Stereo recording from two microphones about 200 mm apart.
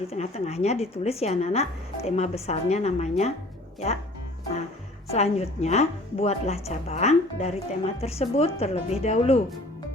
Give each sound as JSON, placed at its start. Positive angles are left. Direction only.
{"t": 0.1, "sound": "speech", "side_deg": 35}
{"t": 5.0, "sound": "speech", "side_deg": 30}